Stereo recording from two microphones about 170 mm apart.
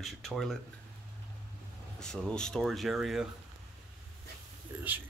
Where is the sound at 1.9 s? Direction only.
5° left (ahead or behind).